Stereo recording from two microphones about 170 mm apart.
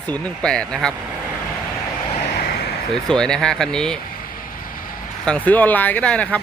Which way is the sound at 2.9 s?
5° left (ahead or behind).